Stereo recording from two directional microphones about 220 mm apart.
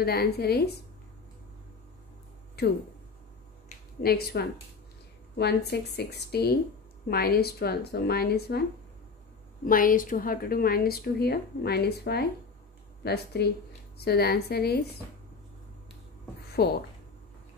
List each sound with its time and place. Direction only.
0.0 s a woman's voice: 45° left (ahead or behind)
2.6 s a woman's voice: 50° left (ahead or behind)
3.6 s a sound: 45° left (ahead or behind)
5.4 s a woman's voice: 50° left (ahead or behind)
9.7 s a woman's voice: 40° left (ahead or behind)
16.5 s speech: 45° left (ahead or behind)